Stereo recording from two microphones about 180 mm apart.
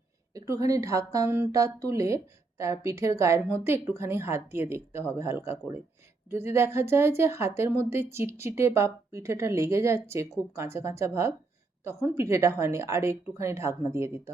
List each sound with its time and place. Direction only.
0.3 s a woman's voice: 20° right (ahead or behind)